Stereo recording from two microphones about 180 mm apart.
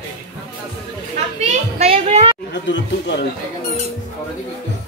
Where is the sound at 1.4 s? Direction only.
35° right (ahead or behind).